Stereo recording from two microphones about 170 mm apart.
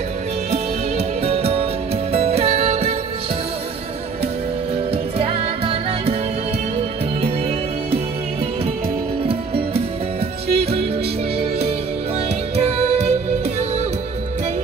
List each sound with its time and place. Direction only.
0.5 s music: 35° right (ahead or behind)
4.9 s music: 35° right (ahead or behind)
10.5 s music: 35° right (ahead or behind)
12.5 s music: 40° right (ahead or behind)